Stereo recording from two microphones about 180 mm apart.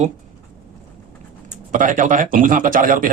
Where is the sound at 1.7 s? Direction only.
45° right (ahead or behind).